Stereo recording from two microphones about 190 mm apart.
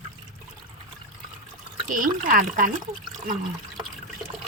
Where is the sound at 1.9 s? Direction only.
45° right (ahead or behind).